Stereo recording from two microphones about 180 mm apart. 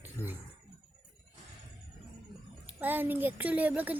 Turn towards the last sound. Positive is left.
turn(degrees=-10)  # may be behind; listen again after turning